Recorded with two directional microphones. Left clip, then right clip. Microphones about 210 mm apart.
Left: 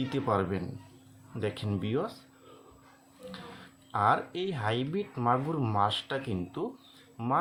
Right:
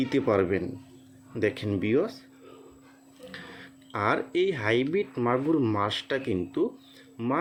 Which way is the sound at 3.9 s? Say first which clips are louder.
Even; 30° right (ahead or behind).